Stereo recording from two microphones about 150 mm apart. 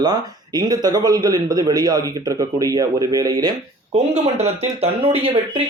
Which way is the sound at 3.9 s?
45° right (ahead or behind).